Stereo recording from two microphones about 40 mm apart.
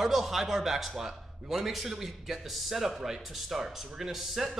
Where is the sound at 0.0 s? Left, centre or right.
Centre.